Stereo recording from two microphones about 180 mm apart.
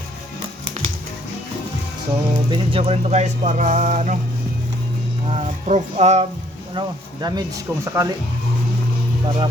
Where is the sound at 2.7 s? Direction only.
30° right (ahead or behind).